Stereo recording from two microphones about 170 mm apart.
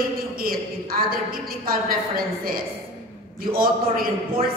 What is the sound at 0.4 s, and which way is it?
Speech, 60° right (ahead or behind).